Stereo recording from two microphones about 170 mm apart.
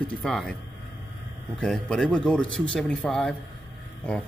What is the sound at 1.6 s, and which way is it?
A man's voice, 5° left (ahead or behind).